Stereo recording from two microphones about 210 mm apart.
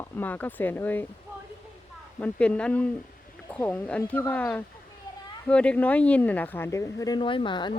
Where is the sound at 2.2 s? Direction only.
5° left (ahead or behind).